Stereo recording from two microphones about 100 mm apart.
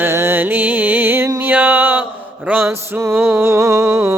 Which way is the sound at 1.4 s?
20° right (ahead or behind).